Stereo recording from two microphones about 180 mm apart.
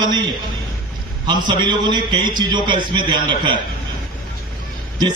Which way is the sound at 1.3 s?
25° right (ahead or behind).